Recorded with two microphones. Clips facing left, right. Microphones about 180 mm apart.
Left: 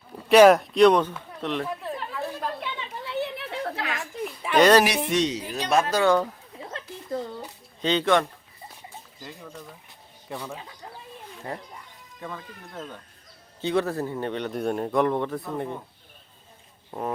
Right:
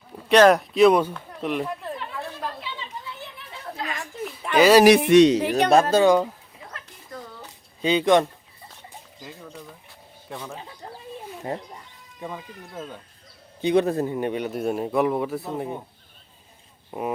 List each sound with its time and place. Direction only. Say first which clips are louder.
0.3 s speech: left 1 dB; 5° left (ahead or behind)
2.6 s a sound: left 2 dB; 65° left (ahead or behind)
3.9 s a sound: left 1 dB; centre (ahead or behind)
5.0 s speech: right 11 dB; 65° right (ahead or behind)
5.7 s speech: right 4 dB; 35° right (ahead or behind)
6.0 s speech: right 3 dB; 15° right (ahead or behind)
6.7 s a sound: left 9 dB; 25° left (ahead or behind)
7.8 s speech: right 3 dB; 10° right (ahead or behind)
10.3 s speech: left 1 dB; centre (ahead or behind)
11.5 s speech: right 4 dB; 20° right (ahead or behind)
16.9 s speech: right 2 dB; 10° right (ahead or behind)